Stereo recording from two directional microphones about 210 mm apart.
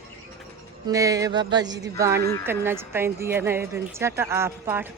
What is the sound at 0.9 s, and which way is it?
A woman's voice, 15° right (ahead or behind).